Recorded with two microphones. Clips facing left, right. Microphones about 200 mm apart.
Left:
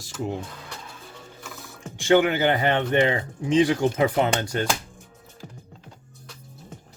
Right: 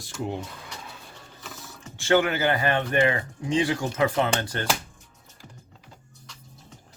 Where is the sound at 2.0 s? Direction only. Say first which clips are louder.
Left 3 dB; 15° left (ahead or behind).